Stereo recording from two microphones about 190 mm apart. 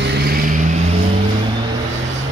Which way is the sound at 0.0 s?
55° right (ahead or behind).